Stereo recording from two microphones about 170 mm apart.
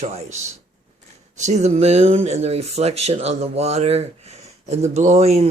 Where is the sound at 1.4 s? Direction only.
45° right (ahead or behind).